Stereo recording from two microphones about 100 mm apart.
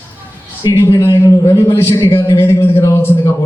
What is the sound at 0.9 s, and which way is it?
A man's voice, 35° left (ahead or behind).